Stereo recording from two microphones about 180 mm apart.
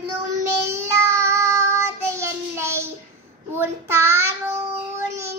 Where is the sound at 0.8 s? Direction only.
15° right (ahead or behind).